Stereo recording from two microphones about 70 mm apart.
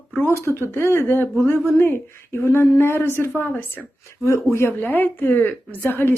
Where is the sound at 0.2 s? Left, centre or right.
Left.